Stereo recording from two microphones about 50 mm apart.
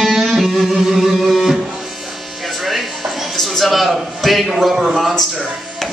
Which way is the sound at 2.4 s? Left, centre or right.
Centre.